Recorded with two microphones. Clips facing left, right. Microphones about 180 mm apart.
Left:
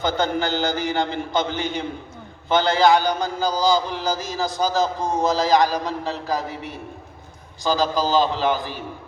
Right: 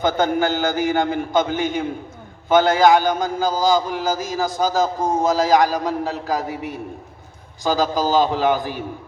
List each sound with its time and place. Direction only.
0.0 s a man's voice: 50° right (ahead or behind)
6.5 s a man's voice: 10° right (ahead or behind)
7.6 s a man's voice: 50° right (ahead or behind)